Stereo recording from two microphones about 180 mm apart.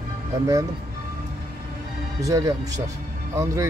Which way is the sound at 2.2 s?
20° right (ahead or behind).